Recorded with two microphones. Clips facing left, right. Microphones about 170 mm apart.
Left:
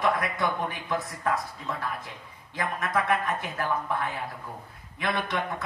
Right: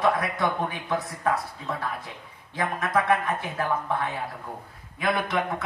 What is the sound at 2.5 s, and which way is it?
A man's voice, 30° right (ahead or behind).